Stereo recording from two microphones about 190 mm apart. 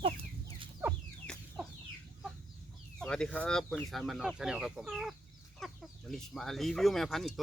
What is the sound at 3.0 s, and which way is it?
Speech, 5° left (ahead or behind).